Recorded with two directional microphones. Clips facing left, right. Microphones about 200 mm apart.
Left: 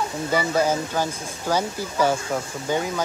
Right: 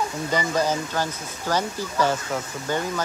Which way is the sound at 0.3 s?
10° left (ahead or behind).